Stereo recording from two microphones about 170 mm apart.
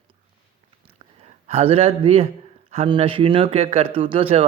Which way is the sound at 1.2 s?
40° right (ahead or behind).